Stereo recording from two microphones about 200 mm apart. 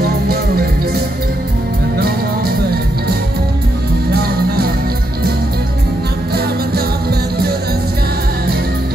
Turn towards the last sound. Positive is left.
turn(degrees=-50)  # may be behind; listen again after turning